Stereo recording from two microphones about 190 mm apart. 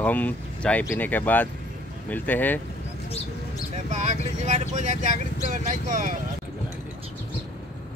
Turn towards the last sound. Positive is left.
turn(degrees=-45)  # may be behind; listen again after turning